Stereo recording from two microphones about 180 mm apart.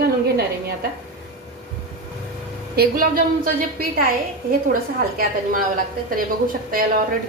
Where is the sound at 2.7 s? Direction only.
55° right (ahead or behind).